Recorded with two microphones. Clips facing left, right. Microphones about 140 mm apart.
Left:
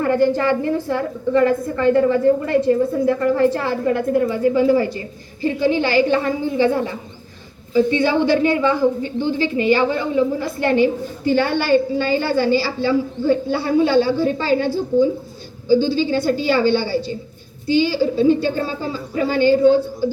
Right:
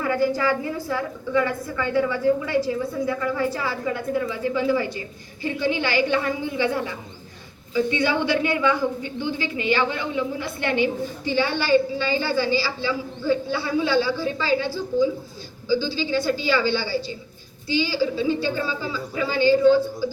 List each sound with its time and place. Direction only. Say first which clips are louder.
0.6 s a woman's voice: left 6 dB; 40° left (ahead or behind)
3.6 s a woman's voice: left 7 dB; 60° left (ahead or behind); by 10.8 s 40° left (ahead or behind)
11.3 s a woman's voice: left 4 dB; 50° left (ahead or behind)